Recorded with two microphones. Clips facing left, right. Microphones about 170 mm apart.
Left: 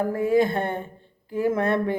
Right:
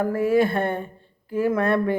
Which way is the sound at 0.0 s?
20° left (ahead or behind).